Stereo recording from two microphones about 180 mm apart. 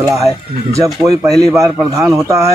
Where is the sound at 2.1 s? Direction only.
15° right (ahead or behind).